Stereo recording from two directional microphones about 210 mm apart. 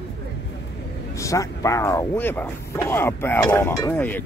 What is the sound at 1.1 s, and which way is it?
Speech, 15° left (ahead or behind).